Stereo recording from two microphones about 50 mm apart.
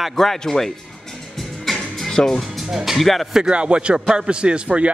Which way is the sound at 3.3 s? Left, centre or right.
Centre.